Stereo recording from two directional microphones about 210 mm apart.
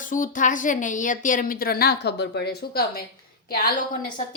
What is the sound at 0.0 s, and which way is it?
A woman's voice, 40° left (ahead or behind).